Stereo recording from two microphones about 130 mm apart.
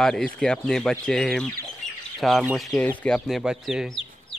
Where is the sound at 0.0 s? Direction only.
5° left (ahead or behind).